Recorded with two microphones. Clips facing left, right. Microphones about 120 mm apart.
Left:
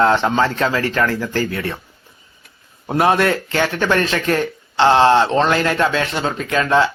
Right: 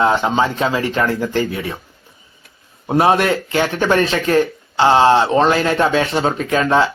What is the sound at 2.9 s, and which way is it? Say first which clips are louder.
A man's voice: right 1 dB; 20° right (ahead or behind).